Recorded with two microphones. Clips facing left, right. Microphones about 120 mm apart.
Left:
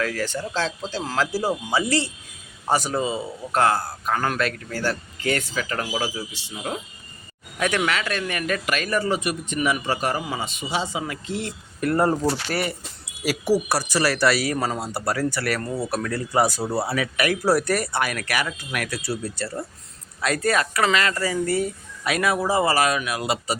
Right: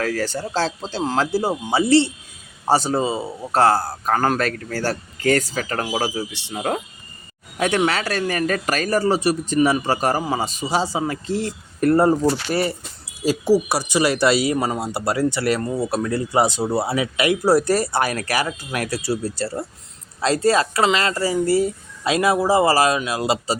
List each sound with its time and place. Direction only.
0.0 s speech: 35° right (ahead or behind)
6.3 s speech: 65° right (ahead or behind)
7.6 s speech: 30° right (ahead or behind)
13.5 s speech: 15° right (ahead or behind); by 23.6 s 30° right (ahead or behind)